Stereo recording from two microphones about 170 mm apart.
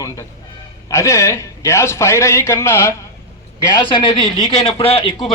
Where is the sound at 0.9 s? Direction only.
15° left (ahead or behind).